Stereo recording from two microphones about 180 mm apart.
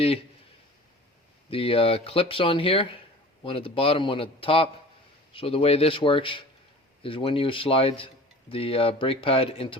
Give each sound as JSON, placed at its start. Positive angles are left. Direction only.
{"t": 1.5, "sound": "a man's voice", "side_deg": 30}